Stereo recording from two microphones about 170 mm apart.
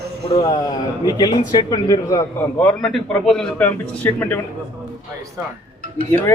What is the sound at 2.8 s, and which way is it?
A man's voice, centre (ahead or behind).